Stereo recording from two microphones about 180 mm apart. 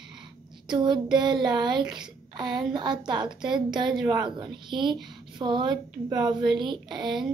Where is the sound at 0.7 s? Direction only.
25° right (ahead or behind).